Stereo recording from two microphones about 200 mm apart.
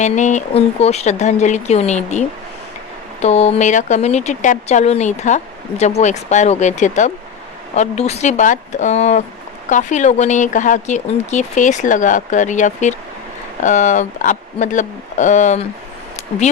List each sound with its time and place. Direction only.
0.0 s speech: 35° left (ahead or behind)